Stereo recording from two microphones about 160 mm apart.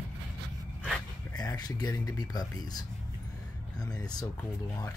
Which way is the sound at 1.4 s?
25° left (ahead or behind).